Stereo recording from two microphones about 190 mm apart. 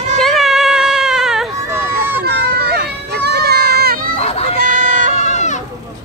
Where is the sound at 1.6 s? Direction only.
10° right (ahead or behind).